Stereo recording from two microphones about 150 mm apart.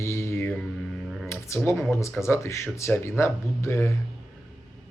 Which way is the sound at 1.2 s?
20° left (ahead or behind).